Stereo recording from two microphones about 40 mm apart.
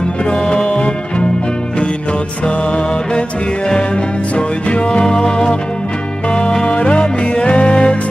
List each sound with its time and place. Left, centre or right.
0.2 s music: left
2.4 s music: left